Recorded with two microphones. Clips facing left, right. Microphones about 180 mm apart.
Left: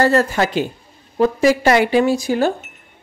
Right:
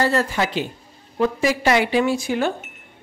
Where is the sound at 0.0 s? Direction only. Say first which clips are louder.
Left 5 dB; 45° left (ahead or behind).